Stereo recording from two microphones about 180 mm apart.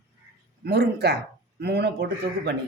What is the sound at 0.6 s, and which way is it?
A woman's voice, 65° right (ahead or behind).